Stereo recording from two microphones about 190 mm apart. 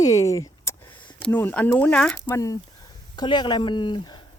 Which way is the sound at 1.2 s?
10° left (ahead or behind).